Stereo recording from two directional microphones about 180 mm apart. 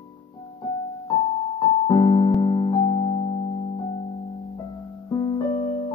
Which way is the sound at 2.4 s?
25° left (ahead or behind).